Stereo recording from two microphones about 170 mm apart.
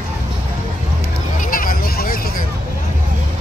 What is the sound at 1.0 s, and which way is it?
Vehicle, 55° left (ahead or behind).